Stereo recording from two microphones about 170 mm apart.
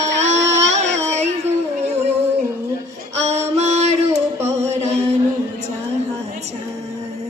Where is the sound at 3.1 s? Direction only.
40° right (ahead or behind).